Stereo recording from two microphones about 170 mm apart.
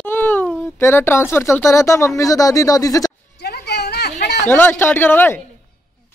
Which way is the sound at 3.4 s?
75° left (ahead or behind).